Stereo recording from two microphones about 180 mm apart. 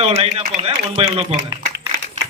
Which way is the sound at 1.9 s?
90° right.